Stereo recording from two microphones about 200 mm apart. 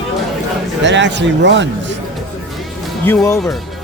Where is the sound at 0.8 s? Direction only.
60° right (ahead or behind).